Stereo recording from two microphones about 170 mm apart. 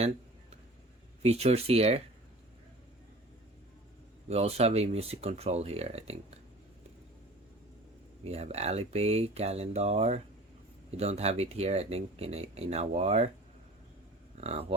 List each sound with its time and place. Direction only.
1.2 s speech: 40° right (ahead or behind)
4.3 s speech: 40° right (ahead or behind)
8.2 s speech: 40° right (ahead or behind)
14.4 s speech: 35° right (ahead or behind)